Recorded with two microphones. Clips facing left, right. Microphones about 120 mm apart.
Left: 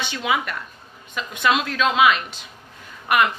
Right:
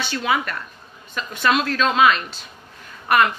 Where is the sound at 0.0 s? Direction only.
20° left (ahead or behind).